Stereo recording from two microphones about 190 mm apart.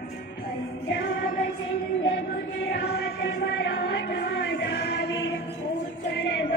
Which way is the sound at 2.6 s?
65° left (ahead or behind).